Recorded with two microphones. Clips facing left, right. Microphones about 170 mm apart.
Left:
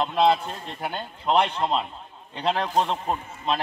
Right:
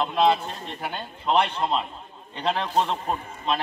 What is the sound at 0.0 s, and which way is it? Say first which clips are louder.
A man's voice: even; 10° left (ahead or behind).